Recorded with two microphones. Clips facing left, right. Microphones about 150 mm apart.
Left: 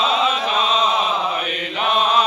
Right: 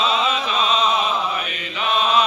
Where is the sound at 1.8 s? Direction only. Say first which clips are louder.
Left 1 dB; 50° left (ahead or behind).